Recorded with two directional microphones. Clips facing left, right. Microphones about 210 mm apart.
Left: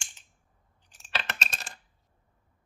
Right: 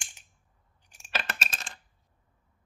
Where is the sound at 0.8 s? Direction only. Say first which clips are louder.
Right 1 dB; 10° right (ahead or behind).